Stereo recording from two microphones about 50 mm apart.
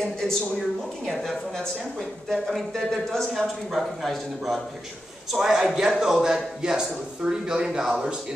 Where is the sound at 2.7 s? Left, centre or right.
Centre.